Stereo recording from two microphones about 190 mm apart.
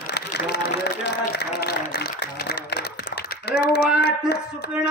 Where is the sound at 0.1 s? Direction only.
60° left (ahead or behind).